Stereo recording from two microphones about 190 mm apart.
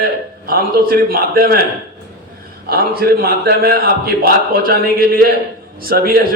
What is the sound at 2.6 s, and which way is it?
A man's voice, 55° right (ahead or behind).